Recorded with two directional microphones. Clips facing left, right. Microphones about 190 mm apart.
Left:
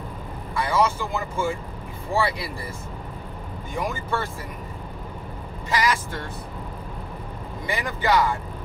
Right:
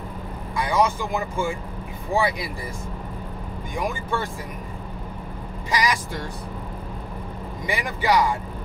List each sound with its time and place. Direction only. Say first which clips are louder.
0.6 s speech: right 1 dB; 15° right (ahead or behind)
3.7 s speech: right 1 dB; 15° right (ahead or behind)
5.7 s speech: even; 15° right (ahead or behind)
7.6 s speech: right 1 dB; 15° right (ahead or behind)